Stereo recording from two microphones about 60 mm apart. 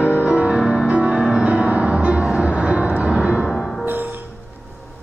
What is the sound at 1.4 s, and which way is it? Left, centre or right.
Music, right.